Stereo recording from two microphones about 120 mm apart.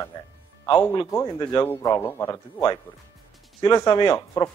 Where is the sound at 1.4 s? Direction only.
35° left (ahead or behind).